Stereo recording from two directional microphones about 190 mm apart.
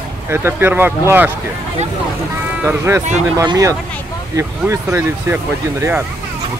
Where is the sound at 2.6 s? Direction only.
15° right (ahead or behind).